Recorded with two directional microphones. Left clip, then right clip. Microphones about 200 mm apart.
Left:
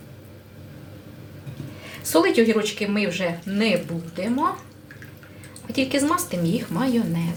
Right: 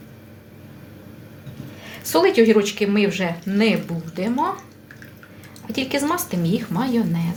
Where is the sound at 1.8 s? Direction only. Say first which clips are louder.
Right 2 dB; 25° right (ahead or behind).